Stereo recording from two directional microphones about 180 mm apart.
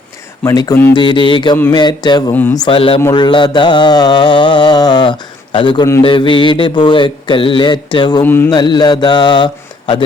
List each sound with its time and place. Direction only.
0.4 s speech: 20° left (ahead or behind)
0.9 s mantra: 25° left (ahead or behind)
2.3 s speech: 10° left (ahead or behind)
2.6 s mantra: 30° left (ahead or behind)
8.2 s speech: 10° left (ahead or behind)
8.4 s mantra: 25° left (ahead or behind)